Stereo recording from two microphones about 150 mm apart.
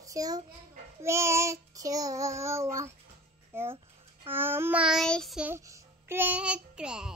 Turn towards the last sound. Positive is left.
turn(degrees=-5)  # may be behind; listen again after turning